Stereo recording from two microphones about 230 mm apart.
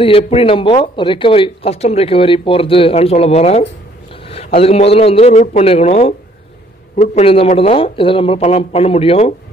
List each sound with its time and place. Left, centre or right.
0.0 s speech: left